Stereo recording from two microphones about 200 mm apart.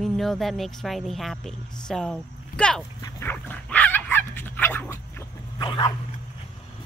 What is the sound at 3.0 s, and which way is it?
Dog, 10° left (ahead or behind).